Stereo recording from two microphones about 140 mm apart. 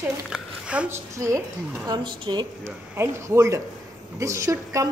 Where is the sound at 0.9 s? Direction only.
20° right (ahead or behind).